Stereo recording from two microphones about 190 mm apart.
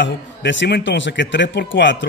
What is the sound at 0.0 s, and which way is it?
A man's voice, 70° left (ahead or behind).